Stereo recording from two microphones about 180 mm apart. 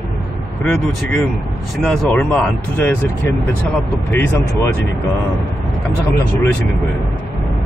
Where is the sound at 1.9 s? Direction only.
5° left (ahead or behind).